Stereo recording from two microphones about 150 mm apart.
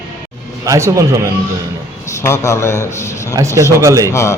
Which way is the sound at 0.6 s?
20° right (ahead or behind).